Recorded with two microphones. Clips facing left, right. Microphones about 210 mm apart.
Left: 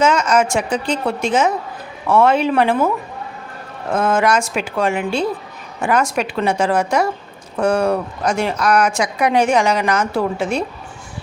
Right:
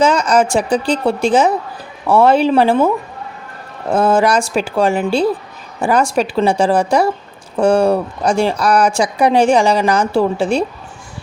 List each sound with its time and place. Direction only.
0.0 s a woman's voice: 35° right (ahead or behind)
3.9 s speech: 35° right (ahead or behind)